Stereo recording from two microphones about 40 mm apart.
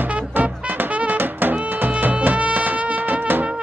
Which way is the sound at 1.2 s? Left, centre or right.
Right.